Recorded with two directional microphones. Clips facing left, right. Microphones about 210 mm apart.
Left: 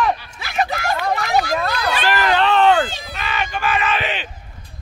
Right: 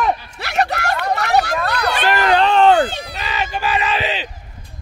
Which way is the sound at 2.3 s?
40° right (ahead or behind).